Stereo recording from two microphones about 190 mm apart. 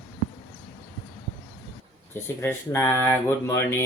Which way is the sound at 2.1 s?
10° left (ahead or behind).